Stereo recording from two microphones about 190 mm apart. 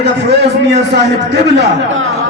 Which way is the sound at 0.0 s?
60° right (ahead or behind).